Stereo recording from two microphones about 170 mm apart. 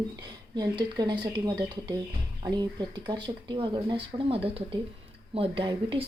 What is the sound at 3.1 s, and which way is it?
Speech, 25° right (ahead or behind).